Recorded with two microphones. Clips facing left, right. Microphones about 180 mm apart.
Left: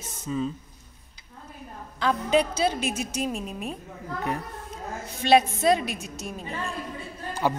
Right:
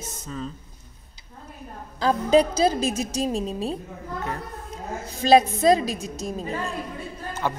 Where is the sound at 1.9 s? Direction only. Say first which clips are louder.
Right 4 dB; 40° right (ahead or behind).